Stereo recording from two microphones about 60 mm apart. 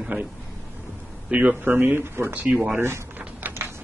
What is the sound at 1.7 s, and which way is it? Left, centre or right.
Speech, right.